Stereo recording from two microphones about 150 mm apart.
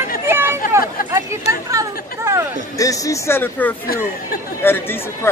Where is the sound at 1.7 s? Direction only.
20° right (ahead or behind).